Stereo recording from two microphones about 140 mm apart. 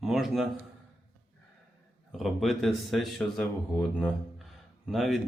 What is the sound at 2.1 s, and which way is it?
A man's voice, centre (ahead or behind).